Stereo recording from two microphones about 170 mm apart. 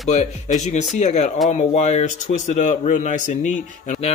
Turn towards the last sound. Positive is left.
turn(degrees=40)  # may be behind; listen again after turning